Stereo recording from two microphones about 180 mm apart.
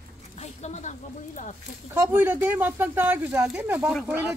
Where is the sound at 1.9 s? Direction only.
10° right (ahead or behind).